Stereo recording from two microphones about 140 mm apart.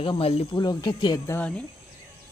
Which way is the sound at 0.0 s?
40° left (ahead or behind).